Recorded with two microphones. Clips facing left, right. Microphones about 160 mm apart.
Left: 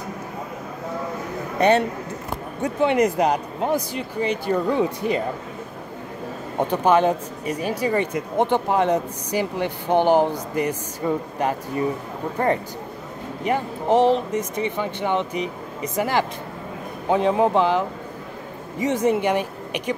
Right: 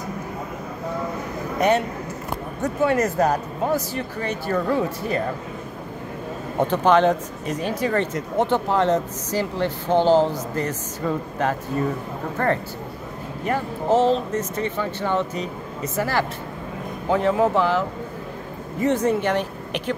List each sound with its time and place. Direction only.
2.8 s speech: 20° left (ahead or behind)
6.7 s speech: 10° left (ahead or behind)